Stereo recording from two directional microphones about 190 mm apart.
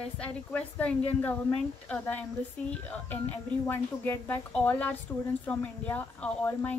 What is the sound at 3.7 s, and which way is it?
A woman's voice, 10° left (ahead or behind).